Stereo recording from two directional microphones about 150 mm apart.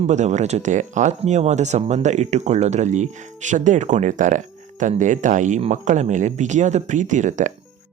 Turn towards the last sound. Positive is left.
turn(degrees=-55)  # may be behind; listen again after turning